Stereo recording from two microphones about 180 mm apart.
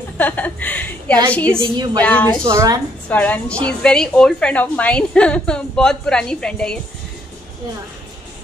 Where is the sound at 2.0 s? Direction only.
10° left (ahead or behind).